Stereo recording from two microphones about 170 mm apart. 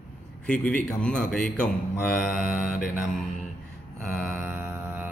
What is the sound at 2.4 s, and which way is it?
Mantra, 50° left (ahead or behind).